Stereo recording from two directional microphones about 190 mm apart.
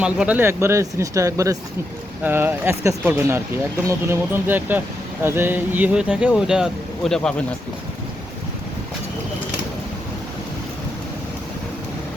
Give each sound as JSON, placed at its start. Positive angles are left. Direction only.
{"t": 0.0, "sound": "speech", "side_deg": -5}